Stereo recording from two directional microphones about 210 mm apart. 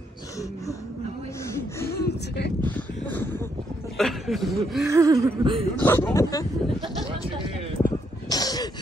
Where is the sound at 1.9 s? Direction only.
50° left (ahead or behind).